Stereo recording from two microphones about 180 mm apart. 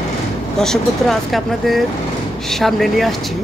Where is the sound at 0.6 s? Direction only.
Centre (ahead or behind).